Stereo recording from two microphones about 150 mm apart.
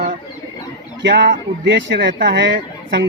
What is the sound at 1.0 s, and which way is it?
Speech, 90° right.